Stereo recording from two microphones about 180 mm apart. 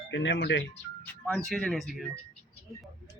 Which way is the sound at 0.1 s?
85° left.